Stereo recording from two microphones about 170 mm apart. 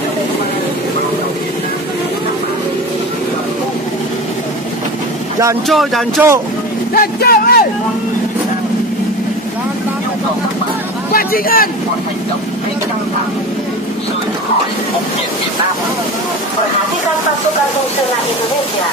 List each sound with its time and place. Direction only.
5.7 s music: centre (ahead or behind)
6.9 s speech: 60° left (ahead or behind)
11.1 s a man's voice: 60° left (ahead or behind)